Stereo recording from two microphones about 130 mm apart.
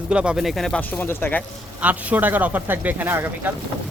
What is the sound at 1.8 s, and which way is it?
Speech, 15° right (ahead or behind).